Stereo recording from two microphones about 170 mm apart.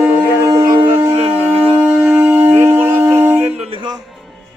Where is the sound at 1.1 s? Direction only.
35° right (ahead or behind).